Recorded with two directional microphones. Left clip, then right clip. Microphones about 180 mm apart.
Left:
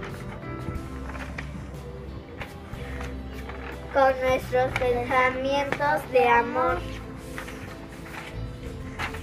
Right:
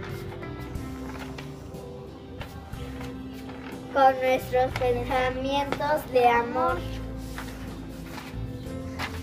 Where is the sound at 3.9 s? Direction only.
15° right (ahead or behind).